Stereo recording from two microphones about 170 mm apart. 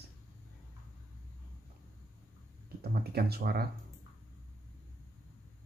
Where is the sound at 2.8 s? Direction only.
65° right (ahead or behind).